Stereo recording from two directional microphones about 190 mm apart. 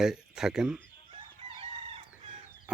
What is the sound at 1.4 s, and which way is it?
Chicken, 30° right (ahead or behind).